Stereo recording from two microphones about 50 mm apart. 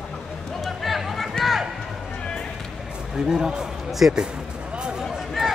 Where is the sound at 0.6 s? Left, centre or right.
Centre.